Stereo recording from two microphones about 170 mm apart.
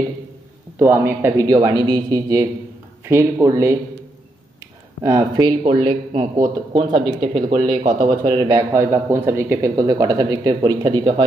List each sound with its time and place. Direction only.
0.7 s speech: 15° right (ahead or behind)
5.0 s speech: 20° right (ahead or behind)